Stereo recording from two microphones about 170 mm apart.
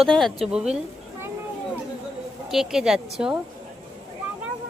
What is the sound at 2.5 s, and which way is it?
Speech, centre (ahead or behind).